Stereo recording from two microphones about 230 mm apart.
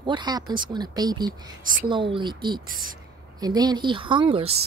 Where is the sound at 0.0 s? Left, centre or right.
Centre.